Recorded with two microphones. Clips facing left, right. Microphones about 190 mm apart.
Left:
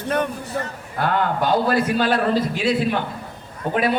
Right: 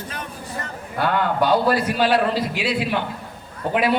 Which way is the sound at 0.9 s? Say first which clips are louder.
Right 1 dB; 45° left (ahead or behind).